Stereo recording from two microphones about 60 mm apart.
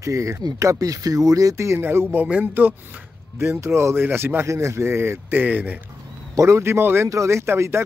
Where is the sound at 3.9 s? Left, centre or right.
Right.